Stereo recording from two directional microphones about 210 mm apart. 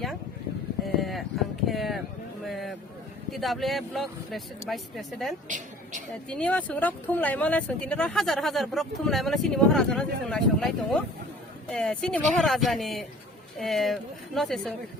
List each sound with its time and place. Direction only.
0.9 s a sound: centre (ahead or behind)
1.6 s speech: centre (ahead or behind)
5.5 s a woman's voice: 35° right (ahead or behind)
6.2 s speech: 5° left (ahead or behind)